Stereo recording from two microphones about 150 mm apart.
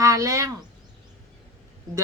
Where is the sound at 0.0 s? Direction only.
20° right (ahead or behind).